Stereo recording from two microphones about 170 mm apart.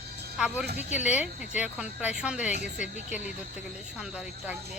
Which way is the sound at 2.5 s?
45° left (ahead or behind).